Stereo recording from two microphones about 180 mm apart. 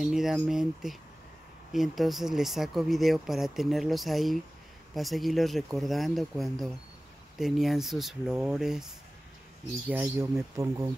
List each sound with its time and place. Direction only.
0.0 s speech: centre (ahead or behind); by 10.9 s 20° right (ahead or behind)